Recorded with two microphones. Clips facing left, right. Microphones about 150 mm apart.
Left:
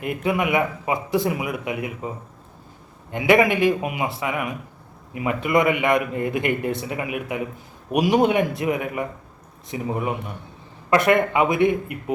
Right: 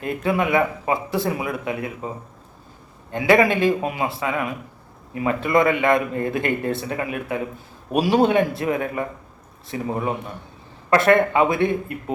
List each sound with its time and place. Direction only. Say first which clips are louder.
0.0 s a man's voice: right 1 dB; 15° left (ahead or behind)